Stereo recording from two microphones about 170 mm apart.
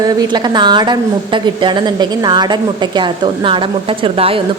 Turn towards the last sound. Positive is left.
turn(degrees=-35)  # may be behind; listen again after turning